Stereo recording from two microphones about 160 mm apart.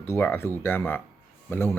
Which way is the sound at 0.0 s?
15° left (ahead or behind).